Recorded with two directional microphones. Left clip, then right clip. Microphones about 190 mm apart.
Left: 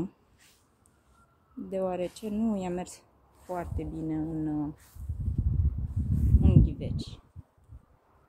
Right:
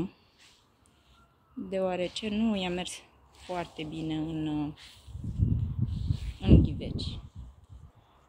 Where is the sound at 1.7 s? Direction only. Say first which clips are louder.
Right 1 dB; centre (ahead or behind).